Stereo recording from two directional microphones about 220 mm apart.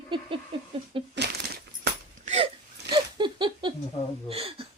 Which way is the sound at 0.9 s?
25° right (ahead or behind).